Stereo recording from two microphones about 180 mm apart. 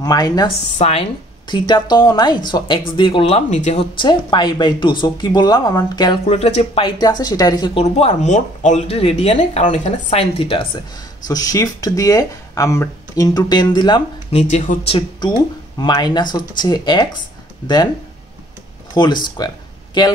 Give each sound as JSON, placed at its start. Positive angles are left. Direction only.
{"t": 0.0, "sound": "speech", "side_deg": 20}
{"t": 0.7, "sound": "speech", "side_deg": 35}
{"t": 1.5, "sound": "speech", "side_deg": 25}
{"t": 4.0, "sound": "speech", "side_deg": 25}
{"t": 6.2, "sound": "speech", "side_deg": 35}
{"t": 7.8, "sound": "speech", "side_deg": 40}
{"t": 14.5, "sound": "speech", "side_deg": 45}
{"t": 14.9, "sound": "speech", "side_deg": 25}
{"t": 18.9, "sound": "speech", "side_deg": 25}